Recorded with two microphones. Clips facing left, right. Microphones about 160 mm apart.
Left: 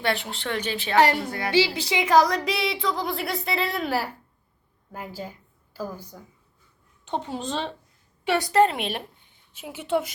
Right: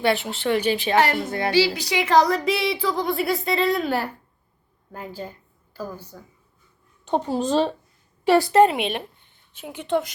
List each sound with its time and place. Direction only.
0.0 s a woman's voice: 5° right (ahead or behind)
1.3 s a woman's voice: 25° right (ahead or behind)
1.5 s a woman's voice: 25° left (ahead or behind)
2.2 s a woman's voice: centre (ahead or behind)
7.0 s a woman's voice: 40° right (ahead or behind)
8.4 s a woman's voice: 20° right (ahead or behind)
8.7 s a woman's voice: centre (ahead or behind)